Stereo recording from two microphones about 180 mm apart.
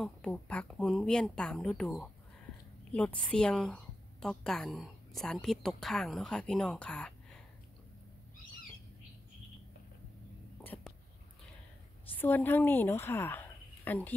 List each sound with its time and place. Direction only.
0.0 s a woman's voice: 5° left (ahead or behind)
10.7 s a sound: 10° left (ahead or behind)
12.2 s speech: 10° left (ahead or behind)